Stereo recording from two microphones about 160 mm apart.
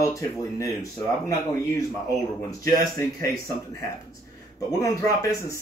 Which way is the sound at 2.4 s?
20° left (ahead or behind).